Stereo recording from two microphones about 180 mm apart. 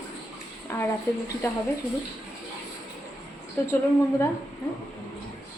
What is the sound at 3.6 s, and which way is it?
Speech, 10° left (ahead or behind).